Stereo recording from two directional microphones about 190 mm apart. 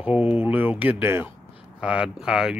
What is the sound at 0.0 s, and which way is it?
Speech, 5° right (ahead or behind).